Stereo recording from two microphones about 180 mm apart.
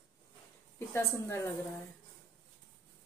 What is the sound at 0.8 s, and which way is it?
Speech, 15° left (ahead or behind).